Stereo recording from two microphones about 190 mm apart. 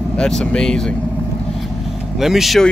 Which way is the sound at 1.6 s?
Centre (ahead or behind).